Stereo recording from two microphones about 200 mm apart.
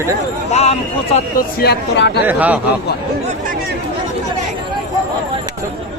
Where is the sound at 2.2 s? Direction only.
10° right (ahead or behind).